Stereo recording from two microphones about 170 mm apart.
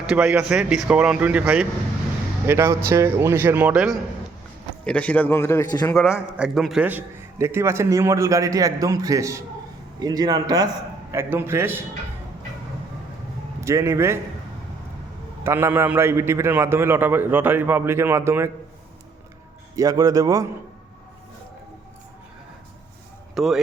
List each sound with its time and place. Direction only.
0.0 s a man's voice: 5° right (ahead or behind)
4.9 s a man's voice: 5° left (ahead or behind)
6.0 s a man's voice: 5° right (ahead or behind)
13.6 s a man's voice: 15° right (ahead or behind)
15.4 s a man's voice: 15° right (ahead or behind)
19.7 s a man's voice: 20° right (ahead or behind)
23.3 s speech: centre (ahead or behind)